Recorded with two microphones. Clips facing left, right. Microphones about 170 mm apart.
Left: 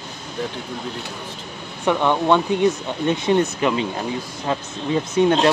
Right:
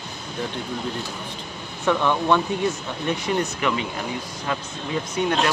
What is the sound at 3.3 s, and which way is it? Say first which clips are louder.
Speech: left 6 dB; 30° left (ahead or behind).